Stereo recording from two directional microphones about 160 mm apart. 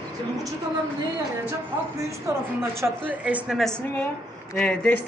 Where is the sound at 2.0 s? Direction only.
15° right (ahead or behind).